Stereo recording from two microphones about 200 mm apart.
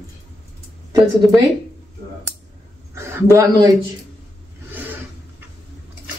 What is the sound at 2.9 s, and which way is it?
Speech, 15° right (ahead or behind).